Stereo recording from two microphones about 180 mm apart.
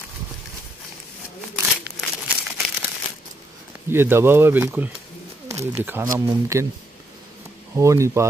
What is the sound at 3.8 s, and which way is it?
Speech, 15° right (ahead or behind).